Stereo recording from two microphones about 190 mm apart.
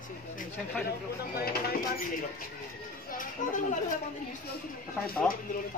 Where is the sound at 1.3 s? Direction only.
55° left (ahead or behind).